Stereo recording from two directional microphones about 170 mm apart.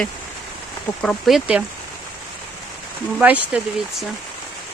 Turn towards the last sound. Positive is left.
turn(degrees=-5)  # may be behind; listen again after turning